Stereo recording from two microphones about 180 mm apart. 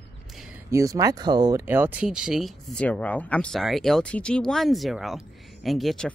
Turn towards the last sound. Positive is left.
turn(degrees=0)  # may be behind; listen again after turning